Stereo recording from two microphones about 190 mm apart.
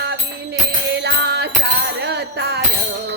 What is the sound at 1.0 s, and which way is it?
Music, 60° right (ahead or behind).